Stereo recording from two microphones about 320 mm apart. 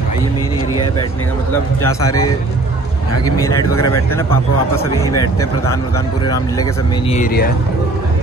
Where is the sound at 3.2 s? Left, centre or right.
Centre; by 7.5 s left.